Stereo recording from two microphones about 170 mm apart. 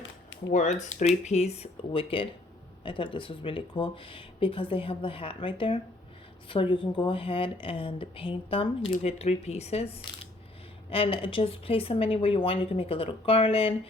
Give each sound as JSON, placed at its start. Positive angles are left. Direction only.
{"t": 0.5, "sound": "speech", "side_deg": 45}